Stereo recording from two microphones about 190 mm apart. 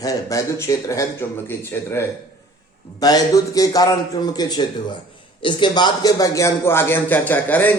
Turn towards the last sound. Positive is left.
turn(degrees=10)  # may be behind; listen again after turning